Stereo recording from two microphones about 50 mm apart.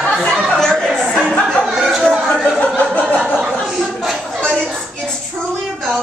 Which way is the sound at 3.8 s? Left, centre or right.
Centre.